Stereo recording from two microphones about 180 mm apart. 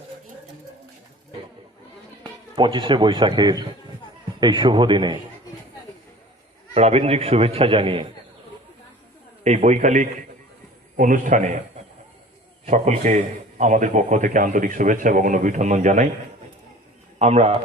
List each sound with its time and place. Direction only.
2.6 s speech: 25° right (ahead or behind)
6.7 s a man's voice: 35° right (ahead or behind)
9.4 s a man's voice: 40° right (ahead or behind)
12.6 s a man's voice: 40° right (ahead or behind)
17.2 s a man's voice: 35° right (ahead or behind)